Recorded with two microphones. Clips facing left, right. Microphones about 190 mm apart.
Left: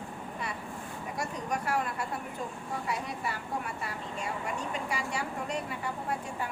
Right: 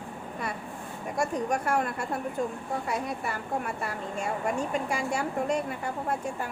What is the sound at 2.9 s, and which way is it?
Speech, 50° right (ahead or behind).